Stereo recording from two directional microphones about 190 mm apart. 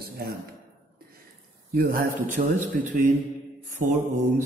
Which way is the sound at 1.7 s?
50° right (ahead or behind).